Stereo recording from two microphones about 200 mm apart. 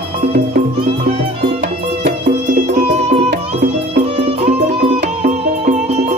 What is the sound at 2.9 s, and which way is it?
Music, 30° right (ahead or behind).